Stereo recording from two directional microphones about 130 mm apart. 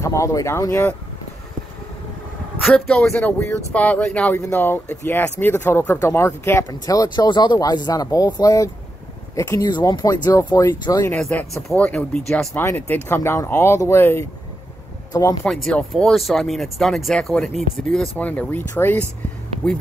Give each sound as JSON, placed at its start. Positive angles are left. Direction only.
{"t": 0.0, "sound": "speech", "side_deg": 25}
{"t": 2.6, "sound": "speech", "side_deg": 5}
{"t": 11.1, "sound": "speech", "side_deg": 5}
{"t": 15.4, "sound": "speech", "side_deg": 5}
{"t": 18.1, "sound": "speech", "side_deg": 10}